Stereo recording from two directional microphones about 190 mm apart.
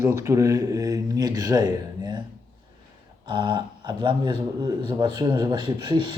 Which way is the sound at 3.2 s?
25° right (ahead or behind).